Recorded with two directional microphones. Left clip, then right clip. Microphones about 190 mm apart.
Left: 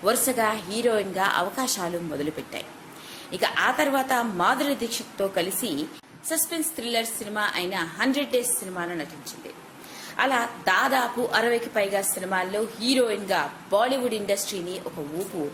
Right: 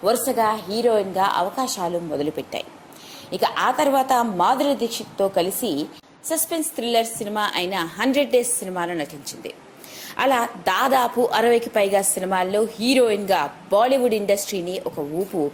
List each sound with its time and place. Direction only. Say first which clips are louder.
0.0 s a woman's voice: right 4 dB; 20° right (ahead or behind)
3.3 s a woman's voice: right 3 dB; 25° right (ahead or behind)
10.2 s a woman's voice: right 4 dB; 35° right (ahead or behind)